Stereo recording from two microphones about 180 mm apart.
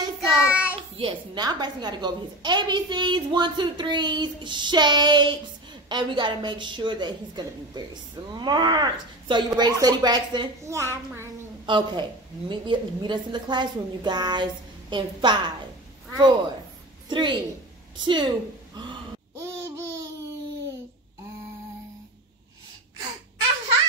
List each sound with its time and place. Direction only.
0.5 s child singing: 5° right (ahead or behind)
0.9 s a woman's voice: 25° right (ahead or behind)